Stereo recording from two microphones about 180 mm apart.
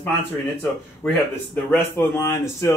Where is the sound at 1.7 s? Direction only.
15° left (ahead or behind).